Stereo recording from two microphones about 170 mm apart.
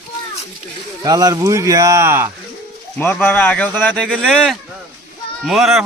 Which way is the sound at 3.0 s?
10° left (ahead or behind).